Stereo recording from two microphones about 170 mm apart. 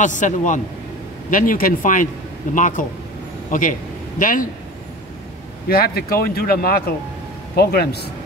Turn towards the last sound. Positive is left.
turn(degrees=65)  # may be behind; listen again after turning